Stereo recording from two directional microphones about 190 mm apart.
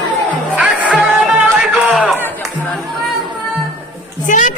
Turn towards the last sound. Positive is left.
turn(degrees=40)  # may be behind; listen again after turning